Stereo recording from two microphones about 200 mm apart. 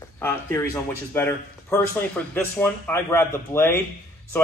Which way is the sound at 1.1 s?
10° left (ahead or behind).